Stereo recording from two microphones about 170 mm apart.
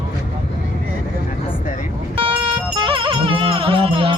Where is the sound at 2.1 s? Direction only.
30° right (ahead or behind).